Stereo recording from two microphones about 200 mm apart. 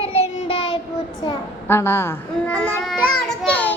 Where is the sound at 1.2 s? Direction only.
15° left (ahead or behind).